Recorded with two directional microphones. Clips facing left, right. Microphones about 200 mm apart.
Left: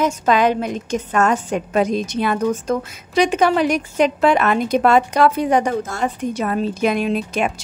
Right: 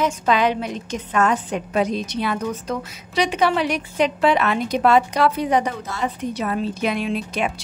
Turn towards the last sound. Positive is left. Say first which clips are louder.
# left 3 dB
turn(degrees=45)  # may be behind; listen again after turning